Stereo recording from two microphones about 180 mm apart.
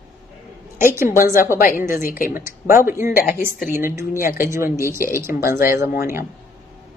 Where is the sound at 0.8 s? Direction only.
15° right (ahead or behind).